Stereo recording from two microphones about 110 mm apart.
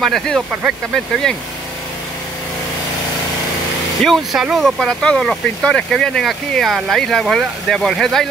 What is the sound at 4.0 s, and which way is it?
Speech, centre (ahead or behind).